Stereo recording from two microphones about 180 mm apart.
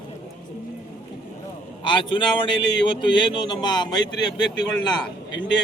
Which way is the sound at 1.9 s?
25° left (ahead or behind).